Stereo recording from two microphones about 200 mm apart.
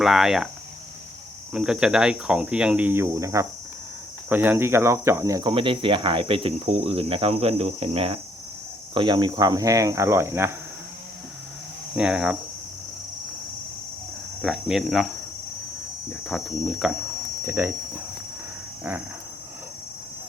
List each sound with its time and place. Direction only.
0.0 s speech: centre (ahead or behind)
1.5 s speech: 5° right (ahead or behind)
11.9 s speech: 5° right (ahead or behind)
14.4 s speech: centre (ahead or behind)
16.2 s speech: centre (ahead or behind)
17.4 s speech: 10° right (ahead or behind)